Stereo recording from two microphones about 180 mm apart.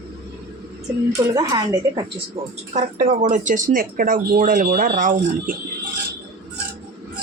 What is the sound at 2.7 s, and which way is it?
Speech, 45° right (ahead or behind).